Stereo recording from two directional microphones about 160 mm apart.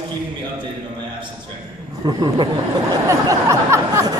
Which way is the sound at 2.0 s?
30° right (ahead or behind).